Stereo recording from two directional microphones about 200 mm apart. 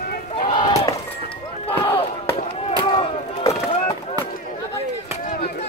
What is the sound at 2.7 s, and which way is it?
Chop, 25° left (ahead or behind).